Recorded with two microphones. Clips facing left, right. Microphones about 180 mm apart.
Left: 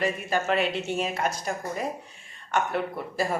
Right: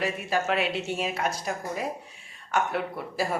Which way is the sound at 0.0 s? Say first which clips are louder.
Left 1 dB; 5° right (ahead or behind).